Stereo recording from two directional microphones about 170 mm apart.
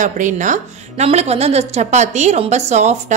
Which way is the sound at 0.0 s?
45° right (ahead or behind).